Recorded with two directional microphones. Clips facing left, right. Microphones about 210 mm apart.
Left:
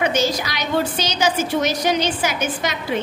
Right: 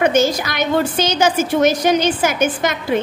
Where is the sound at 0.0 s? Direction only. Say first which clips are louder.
Right 5 dB; 50° right (ahead or behind).